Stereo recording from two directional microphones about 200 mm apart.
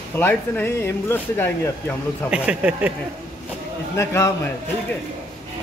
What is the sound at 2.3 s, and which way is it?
Speech, 5° right (ahead or behind).